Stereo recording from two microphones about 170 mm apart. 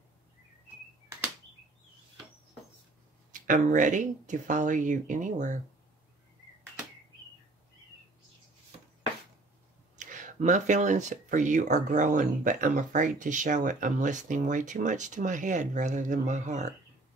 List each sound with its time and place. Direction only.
3.3 s speech: 50° right (ahead or behind)
9.9 s speech: 45° right (ahead or behind)